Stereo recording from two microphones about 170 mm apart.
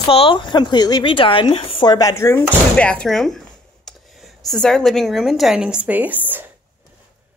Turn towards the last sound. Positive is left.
turn(degrees=-10)  # may be behind; listen again after turning